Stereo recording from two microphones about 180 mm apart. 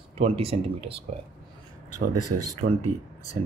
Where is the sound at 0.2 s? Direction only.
30° right (ahead or behind).